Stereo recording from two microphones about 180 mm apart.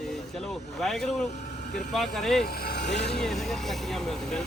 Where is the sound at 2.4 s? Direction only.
55° left (ahead or behind).